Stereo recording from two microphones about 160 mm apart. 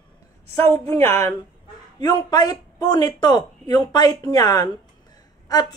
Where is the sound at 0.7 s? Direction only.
15° left (ahead or behind).